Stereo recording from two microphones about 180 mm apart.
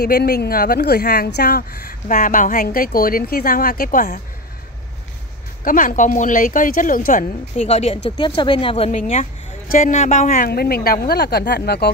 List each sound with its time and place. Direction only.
0.0 s speech: 60° left (ahead or behind)
5.6 s speech: 50° left (ahead or behind)
7.5 s a woman's voice: 35° left (ahead or behind); by 11.9 s 60° left (ahead or behind)